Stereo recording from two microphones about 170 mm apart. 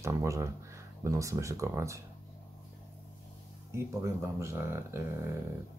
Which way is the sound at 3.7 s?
15° right (ahead or behind).